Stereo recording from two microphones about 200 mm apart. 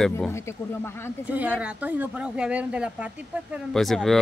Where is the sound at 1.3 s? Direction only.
5° right (ahead or behind).